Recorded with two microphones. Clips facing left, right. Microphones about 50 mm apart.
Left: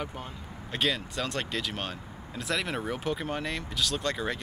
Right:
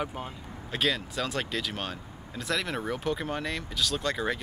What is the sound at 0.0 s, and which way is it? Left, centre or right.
Speech, centre.